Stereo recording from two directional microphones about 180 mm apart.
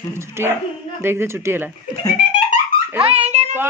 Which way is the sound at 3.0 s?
35° right (ahead or behind).